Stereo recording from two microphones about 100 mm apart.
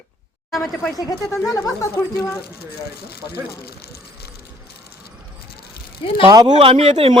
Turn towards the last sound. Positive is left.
turn(degrees=-85)